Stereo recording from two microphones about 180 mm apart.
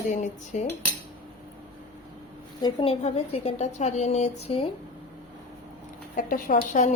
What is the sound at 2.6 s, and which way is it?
A woman's voice, 25° left (ahead or behind).